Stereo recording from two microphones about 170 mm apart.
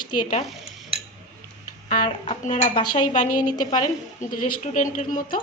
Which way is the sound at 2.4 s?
50° left (ahead or behind).